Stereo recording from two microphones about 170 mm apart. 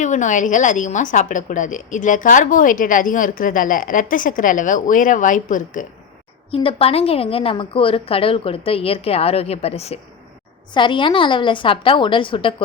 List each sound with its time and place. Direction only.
0.0 s a woman's voice: 45° left (ahead or behind)
6.5 s a woman's voice: 35° left (ahead or behind)